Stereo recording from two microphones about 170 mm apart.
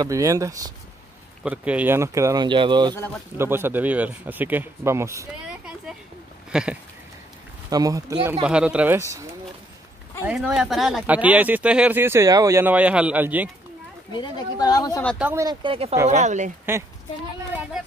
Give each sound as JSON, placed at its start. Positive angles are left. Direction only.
{"t": 0.0, "sound": "speech", "side_deg": -20}
{"t": 1.4, "sound": "speech", "side_deg": -5}
{"t": 3.3, "sound": "speech", "side_deg": -15}
{"t": 5.5, "sound": "speech", "side_deg": -5}
{"t": 6.5, "sound": "a sound", "side_deg": -5}
{"t": 7.7, "sound": "speech", "side_deg": -20}
{"t": 10.2, "sound": "speech", "side_deg": -5}
{"t": 14.1, "sound": "speech", "side_deg": 25}
{"t": 15.3, "sound": "speech", "side_deg": -25}
{"t": 16.1, "sound": "speech", "side_deg": -45}